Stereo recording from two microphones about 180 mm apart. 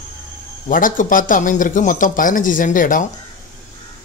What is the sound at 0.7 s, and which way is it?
Speech, 50° left (ahead or behind).